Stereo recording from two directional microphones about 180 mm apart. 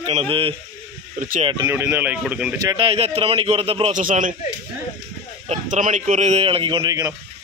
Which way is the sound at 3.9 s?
45° right (ahead or behind).